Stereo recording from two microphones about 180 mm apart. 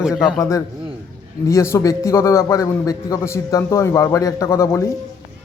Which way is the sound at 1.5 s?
15° left (ahead or behind).